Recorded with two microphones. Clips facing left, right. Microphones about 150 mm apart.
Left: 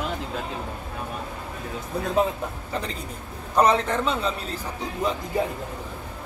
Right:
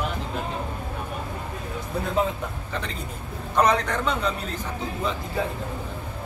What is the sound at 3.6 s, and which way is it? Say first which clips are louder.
Speech: left 1 dB; 30° left (ahead or behind).